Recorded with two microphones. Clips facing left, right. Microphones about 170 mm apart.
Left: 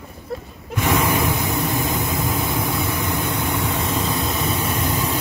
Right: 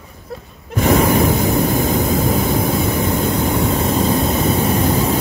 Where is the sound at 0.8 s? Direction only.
40° right (ahead or behind).